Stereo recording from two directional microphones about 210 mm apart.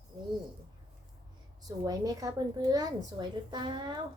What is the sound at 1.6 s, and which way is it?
A woman's voice, 15° right (ahead or behind).